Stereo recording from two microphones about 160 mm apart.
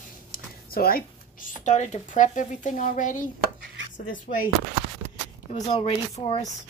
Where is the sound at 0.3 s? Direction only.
70° left (ahead or behind).